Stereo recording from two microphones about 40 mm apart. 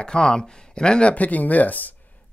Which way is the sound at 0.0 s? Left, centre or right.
Left.